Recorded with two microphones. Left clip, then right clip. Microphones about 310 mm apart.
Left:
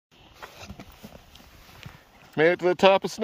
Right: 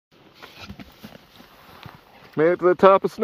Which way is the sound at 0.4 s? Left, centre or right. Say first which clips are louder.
Right 2 dB; centre.